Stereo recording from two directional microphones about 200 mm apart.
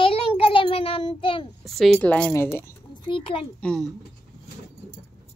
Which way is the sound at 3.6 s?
5° left (ahead or behind).